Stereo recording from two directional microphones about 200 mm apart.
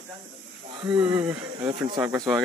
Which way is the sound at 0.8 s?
20° right (ahead or behind).